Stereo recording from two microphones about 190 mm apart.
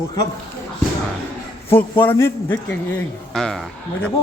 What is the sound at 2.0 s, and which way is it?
A man's voice, 10° left (ahead or behind).